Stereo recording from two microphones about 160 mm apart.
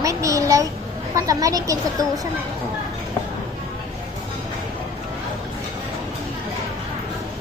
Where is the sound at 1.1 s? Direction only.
20° right (ahead or behind).